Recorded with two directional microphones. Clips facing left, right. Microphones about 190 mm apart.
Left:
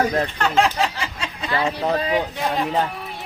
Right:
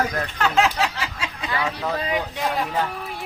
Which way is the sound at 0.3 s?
Centre (ahead or behind).